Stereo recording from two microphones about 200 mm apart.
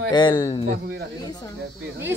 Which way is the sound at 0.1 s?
20° left (ahead or behind).